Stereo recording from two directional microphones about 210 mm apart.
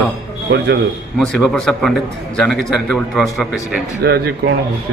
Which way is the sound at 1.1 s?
Centre (ahead or behind).